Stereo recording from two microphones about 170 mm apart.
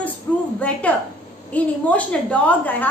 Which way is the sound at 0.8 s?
10° left (ahead or behind).